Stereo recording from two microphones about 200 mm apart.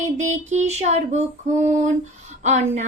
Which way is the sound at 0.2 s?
35° right (ahead or behind).